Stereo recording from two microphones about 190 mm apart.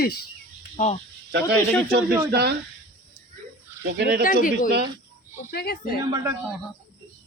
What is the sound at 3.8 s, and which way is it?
Speech, 60° right (ahead or behind).